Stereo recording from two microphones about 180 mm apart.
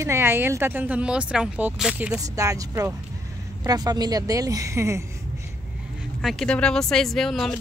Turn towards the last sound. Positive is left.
turn(degrees=0)  # may be behind; listen again after turning